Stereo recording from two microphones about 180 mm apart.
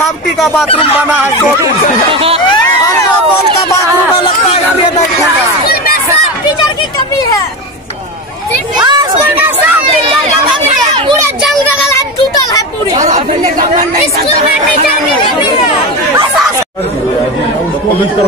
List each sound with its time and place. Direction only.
0.0 s speech: centre (ahead or behind)
1.1 s snicker: 10° right (ahead or behind)
2.1 s speech: 30° right (ahead or behind)
8.7 s a sound: 25° right (ahead or behind)
13.0 s chatter: 40° right (ahead or behind)